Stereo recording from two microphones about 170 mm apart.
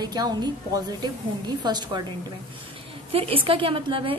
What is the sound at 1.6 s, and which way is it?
Speech, 25° right (ahead or behind).